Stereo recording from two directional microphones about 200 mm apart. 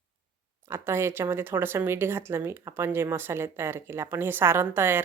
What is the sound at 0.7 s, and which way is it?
Speech, 10° right (ahead or behind).